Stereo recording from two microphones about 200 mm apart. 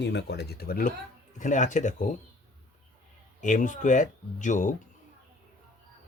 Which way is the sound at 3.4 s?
40° left (ahead or behind).